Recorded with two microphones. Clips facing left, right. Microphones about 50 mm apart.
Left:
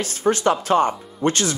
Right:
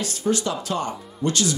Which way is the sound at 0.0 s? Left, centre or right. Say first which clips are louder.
Left 4 dB; left.